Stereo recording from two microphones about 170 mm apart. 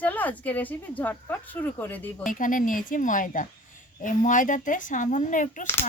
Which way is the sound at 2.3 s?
50° left (ahead or behind).